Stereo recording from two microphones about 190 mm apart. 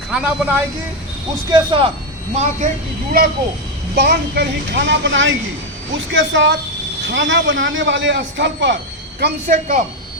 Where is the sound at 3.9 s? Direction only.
55° right (ahead or behind).